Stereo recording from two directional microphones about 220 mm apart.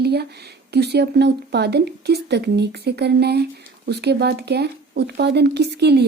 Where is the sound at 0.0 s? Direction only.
50° right (ahead or behind).